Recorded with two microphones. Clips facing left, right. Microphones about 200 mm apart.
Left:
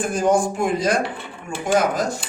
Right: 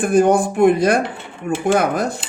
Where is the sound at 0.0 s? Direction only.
60° right (ahead or behind).